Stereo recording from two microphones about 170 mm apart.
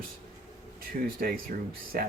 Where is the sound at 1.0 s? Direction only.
50° right (ahead or behind).